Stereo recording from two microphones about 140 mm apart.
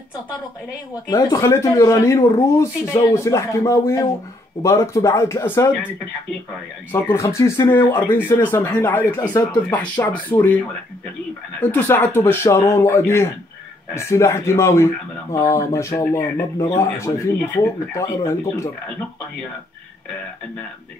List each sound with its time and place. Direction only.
1.0 s speech: 25° left (ahead or behind)
6.9 s speech: 15° left (ahead or behind)
11.6 s speech: 15° left (ahead or behind)